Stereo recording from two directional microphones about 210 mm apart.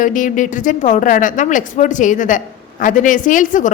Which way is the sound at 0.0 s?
40° left (ahead or behind).